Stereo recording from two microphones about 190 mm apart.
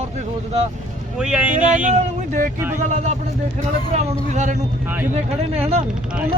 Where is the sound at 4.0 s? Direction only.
35° right (ahead or behind).